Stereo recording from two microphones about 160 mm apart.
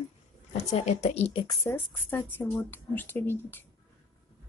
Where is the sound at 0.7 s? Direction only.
45° left (ahead or behind).